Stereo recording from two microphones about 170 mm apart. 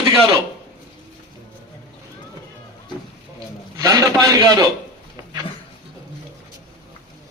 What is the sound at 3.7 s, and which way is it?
Speech, 20° right (ahead or behind).